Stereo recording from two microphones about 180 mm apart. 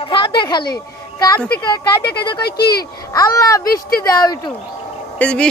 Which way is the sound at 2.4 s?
60° left (ahead or behind).